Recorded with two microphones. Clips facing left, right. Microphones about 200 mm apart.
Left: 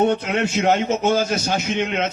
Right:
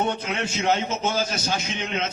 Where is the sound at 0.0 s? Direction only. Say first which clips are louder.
Left 7 dB; 55° left (ahead or behind).